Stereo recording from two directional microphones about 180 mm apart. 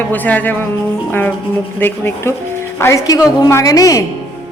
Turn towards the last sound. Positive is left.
turn(degrees=20)  # may be behind; listen again after turning